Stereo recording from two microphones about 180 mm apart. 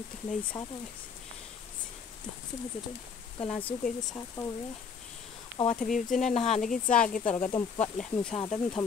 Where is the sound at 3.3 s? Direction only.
30° left (ahead or behind).